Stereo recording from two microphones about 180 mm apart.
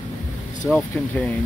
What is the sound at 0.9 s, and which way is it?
Speech, 10° left (ahead or behind).